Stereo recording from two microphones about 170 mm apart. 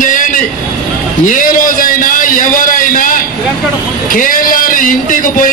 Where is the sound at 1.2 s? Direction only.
50° left (ahead or behind).